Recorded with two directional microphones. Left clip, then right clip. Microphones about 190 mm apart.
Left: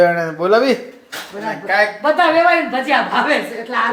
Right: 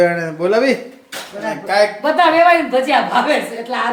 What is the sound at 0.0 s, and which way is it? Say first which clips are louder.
Speech: left 1 dB; 10° right (ahead or behind).